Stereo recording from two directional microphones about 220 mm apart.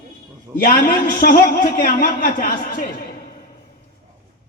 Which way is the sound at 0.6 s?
40° left (ahead or behind).